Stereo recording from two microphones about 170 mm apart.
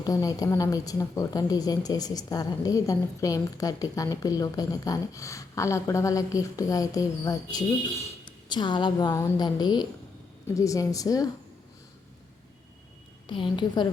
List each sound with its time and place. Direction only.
0.0 s a woman's voice: 20° left (ahead or behind)
13.2 s a woman's voice: 30° left (ahead or behind)